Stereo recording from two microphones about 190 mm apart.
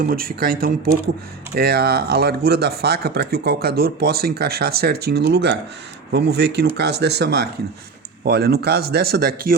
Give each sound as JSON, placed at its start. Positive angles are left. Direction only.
{"t": 0.0, "sound": "speech", "side_deg": -50}